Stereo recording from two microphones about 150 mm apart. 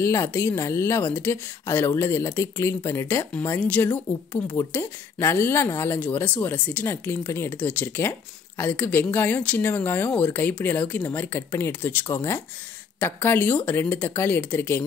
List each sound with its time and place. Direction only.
0.0 s speech: 20° left (ahead or behind)